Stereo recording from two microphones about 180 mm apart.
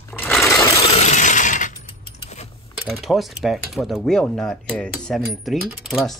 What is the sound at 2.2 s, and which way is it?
Mechanisms, 40° left (ahead or behind).